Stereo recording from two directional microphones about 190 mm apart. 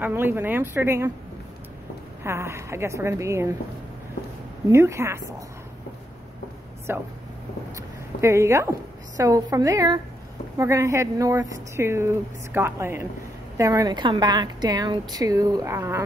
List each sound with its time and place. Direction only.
0.0 s a woman's voice: 10° right (ahead or behind)
2.2 s a woman's voice: 15° right (ahead or behind)
4.6 s a woman's voice: 15° right (ahead or behind)
6.9 s a woman's voice: 10° right (ahead or behind)